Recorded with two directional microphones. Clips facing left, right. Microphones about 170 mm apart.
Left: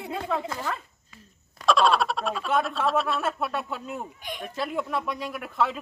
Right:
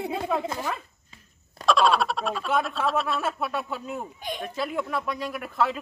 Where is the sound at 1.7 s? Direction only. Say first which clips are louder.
Even; centre (ahead or behind).